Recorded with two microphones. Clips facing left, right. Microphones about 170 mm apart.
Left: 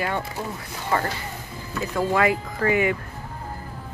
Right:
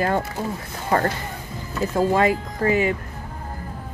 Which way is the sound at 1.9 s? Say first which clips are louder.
Right 2 dB; 25° right (ahead or behind).